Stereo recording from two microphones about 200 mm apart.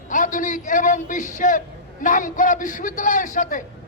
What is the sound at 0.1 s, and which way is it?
A man's voice, 40° left (ahead or behind).